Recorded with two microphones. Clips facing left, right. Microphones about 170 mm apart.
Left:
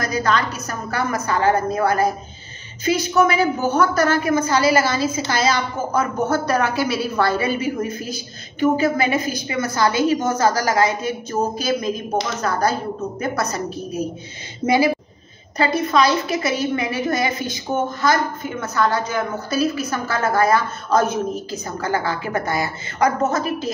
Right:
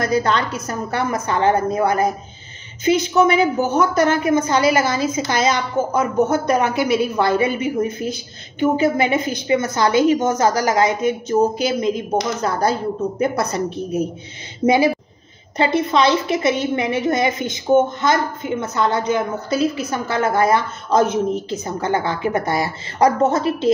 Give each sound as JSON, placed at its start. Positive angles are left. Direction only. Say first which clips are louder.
{"t": 0.0, "sound": "a woman's voice", "louder": "right 2 dB", "side_deg": -25}
{"t": 15.5, "sound": "a woman's voice", "louder": "right 1 dB", "side_deg": -25}